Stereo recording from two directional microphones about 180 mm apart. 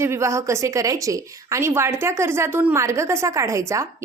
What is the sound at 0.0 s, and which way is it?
A woman's voice, 15° right (ahead or behind).